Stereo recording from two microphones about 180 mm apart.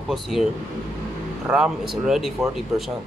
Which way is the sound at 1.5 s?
5° right (ahead or behind).